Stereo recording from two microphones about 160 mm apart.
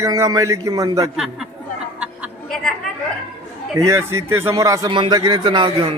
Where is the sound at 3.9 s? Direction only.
15° right (ahead or behind).